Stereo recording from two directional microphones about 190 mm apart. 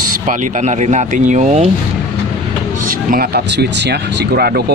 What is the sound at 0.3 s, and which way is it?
Speech, 40° right (ahead or behind).